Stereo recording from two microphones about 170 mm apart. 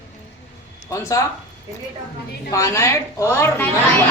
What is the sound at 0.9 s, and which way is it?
Speech, 20° left (ahead or behind).